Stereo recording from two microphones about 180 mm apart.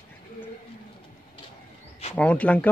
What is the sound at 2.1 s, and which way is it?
Speech, 5° left (ahead or behind).